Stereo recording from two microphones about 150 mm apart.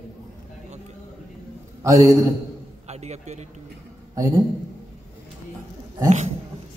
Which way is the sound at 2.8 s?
45° right (ahead or behind).